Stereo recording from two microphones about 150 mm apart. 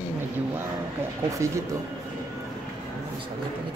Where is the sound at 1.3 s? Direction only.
20° right (ahead or behind).